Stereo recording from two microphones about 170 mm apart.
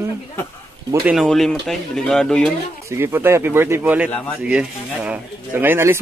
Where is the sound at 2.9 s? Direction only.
15° right (ahead or behind).